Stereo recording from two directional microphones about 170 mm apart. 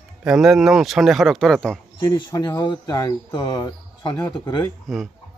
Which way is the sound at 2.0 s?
25° left (ahead or behind).